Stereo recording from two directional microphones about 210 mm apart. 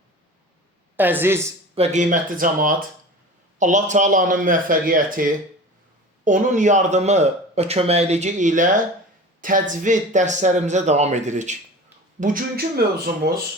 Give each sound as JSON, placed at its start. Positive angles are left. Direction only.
{"t": 0.9, "sound": "a woman's voice", "side_deg": -10}
{"t": 1.7, "sound": "speech", "side_deg": -30}